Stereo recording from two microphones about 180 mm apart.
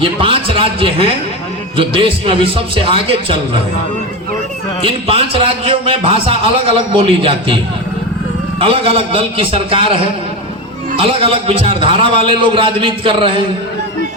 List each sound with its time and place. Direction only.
0.0 s a man's voice: 30° right (ahead or behind)
5.0 s a man's voice: 30° right (ahead or behind)